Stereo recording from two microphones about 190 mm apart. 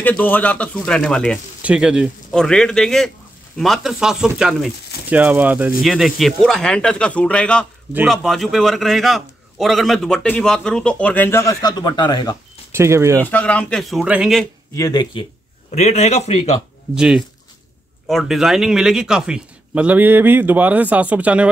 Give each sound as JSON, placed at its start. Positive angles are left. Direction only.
{"t": 0.0, "sound": "a man's voice", "side_deg": 10}
{"t": 7.9, "sound": "a man's voice", "side_deg": -5}
{"t": 12.7, "sound": "a man's voice", "side_deg": -15}
{"t": 13.2, "sound": "a man's voice", "side_deg": 10}
{"t": 14.8, "sound": "speech", "side_deg": 20}
{"t": 15.7, "sound": "a man's voice", "side_deg": 35}
{"t": 16.9, "sound": "a man's voice", "side_deg": -5}